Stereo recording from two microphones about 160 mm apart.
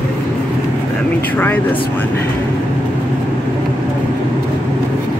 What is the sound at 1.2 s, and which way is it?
Speech, 10° left (ahead or behind).